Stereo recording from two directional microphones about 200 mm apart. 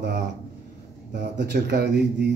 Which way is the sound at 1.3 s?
55° right (ahead or behind).